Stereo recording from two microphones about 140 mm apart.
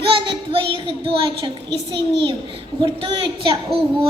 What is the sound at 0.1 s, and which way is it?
Child singing, 35° right (ahead or behind).